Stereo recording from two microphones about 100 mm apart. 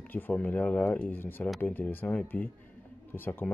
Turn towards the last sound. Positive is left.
turn(degrees=20)  # may be behind; listen again after turning